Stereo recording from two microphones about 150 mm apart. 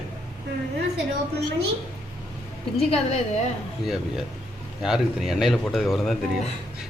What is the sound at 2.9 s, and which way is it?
Speech, 45° left (ahead or behind).